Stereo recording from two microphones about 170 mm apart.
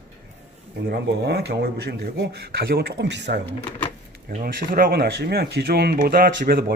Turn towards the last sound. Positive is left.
turn(degrees=-60)  # may be behind; listen again after turning